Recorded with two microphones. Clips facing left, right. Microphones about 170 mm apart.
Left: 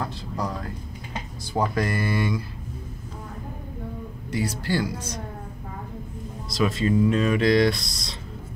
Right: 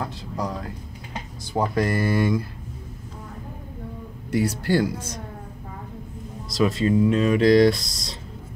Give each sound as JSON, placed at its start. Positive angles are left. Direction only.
{"t": 0.0, "sound": "a sound", "side_deg": -15}
{"t": 1.5, "sound": "speech", "side_deg": -30}
{"t": 4.3, "sound": "speech", "side_deg": -55}
{"t": 6.5, "sound": "speech", "side_deg": -30}